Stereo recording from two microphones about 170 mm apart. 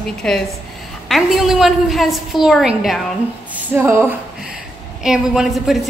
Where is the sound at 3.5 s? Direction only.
15° right (ahead or behind).